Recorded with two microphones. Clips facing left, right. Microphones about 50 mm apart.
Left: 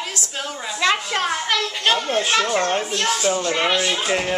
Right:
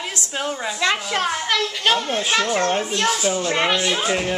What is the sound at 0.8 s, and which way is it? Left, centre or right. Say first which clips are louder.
A child's voice: left 2 dB; centre.